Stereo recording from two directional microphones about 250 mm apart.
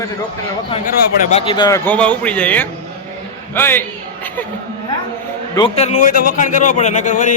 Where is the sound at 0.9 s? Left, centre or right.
Left; by 3.8 s centre.